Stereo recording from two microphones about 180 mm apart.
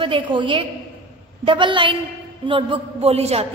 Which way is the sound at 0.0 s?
30° right (ahead or behind).